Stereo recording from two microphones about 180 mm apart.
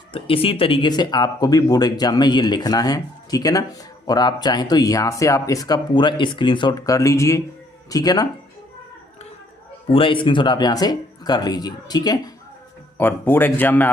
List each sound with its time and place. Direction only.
0.1 s speech: 30° left (ahead or behind)
9.9 s speech: 30° left (ahead or behind)
13.0 s speech: 10° left (ahead or behind)